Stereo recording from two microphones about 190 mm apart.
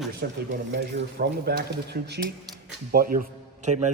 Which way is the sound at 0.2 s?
55° right (ahead or behind).